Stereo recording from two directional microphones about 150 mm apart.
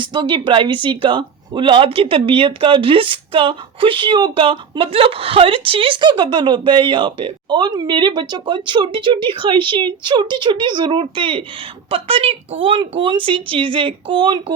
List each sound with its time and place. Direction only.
0.0 s speech: 30° right (ahead or behind)